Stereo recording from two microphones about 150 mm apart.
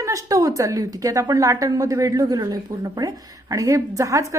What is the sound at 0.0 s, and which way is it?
A woman's voice, 20° right (ahead or behind).